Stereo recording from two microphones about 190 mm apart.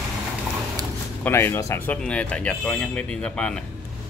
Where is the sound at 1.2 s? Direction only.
10° left (ahead or behind).